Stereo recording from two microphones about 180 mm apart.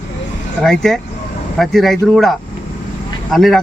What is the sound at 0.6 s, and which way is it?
Speech, centre (ahead or behind).